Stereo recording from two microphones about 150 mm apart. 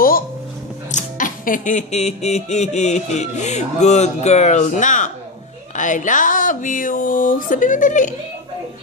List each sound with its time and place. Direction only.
0.9 s speech: 60° left (ahead or behind)